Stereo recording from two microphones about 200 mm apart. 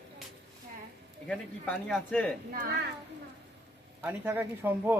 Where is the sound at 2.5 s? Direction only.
40° right (ahead or behind).